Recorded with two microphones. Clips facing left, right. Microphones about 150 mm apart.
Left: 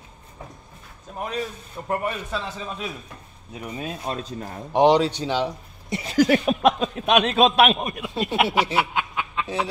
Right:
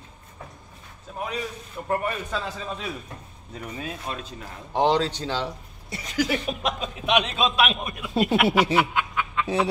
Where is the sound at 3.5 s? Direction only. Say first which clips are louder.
Left 2 dB; 20° left (ahead or behind).